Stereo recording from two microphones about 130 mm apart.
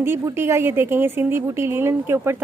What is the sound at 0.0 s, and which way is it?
Speech, 20° right (ahead or behind).